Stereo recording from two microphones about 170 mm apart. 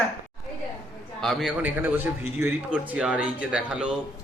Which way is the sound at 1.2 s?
Centre (ahead or behind).